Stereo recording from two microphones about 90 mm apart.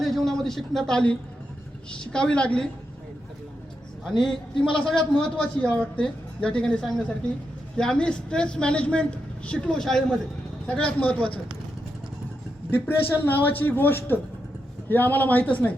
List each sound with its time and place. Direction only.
0.0 s a sound: 5° left (ahead or behind)
1.9 s speech: 10° left (ahead or behind)
4.2 s speech: 5° left (ahead or behind)
12.7 s a man's voice: 20° left (ahead or behind)